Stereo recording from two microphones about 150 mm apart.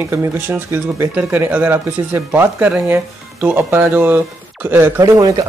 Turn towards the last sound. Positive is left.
turn(degrees=-25)  # may be behind; listen again after turning